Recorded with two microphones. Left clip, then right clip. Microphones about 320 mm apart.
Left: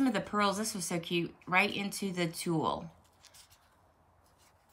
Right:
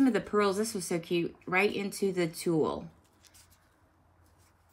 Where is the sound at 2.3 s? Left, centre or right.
Centre.